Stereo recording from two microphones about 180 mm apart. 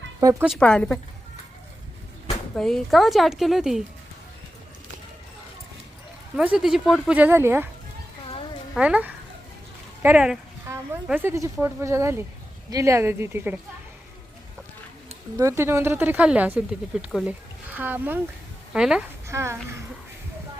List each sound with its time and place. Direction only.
0.2 s a woman's voice: 20° right (ahead or behind)
0.4 s a woman's voice: centre (ahead or behind)
2.6 s a woman's voice: centre (ahead or behind)
6.3 s speech: 5° right (ahead or behind)
8.7 s speech: 5° right (ahead or behind)
15.4 s a woman's voice: 15° right (ahead or behind)
19.3 s speech: 15° right (ahead or behind)